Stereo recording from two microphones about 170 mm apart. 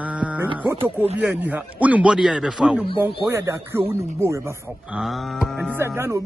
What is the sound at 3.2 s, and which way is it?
A man's voice, 15° right (ahead or behind).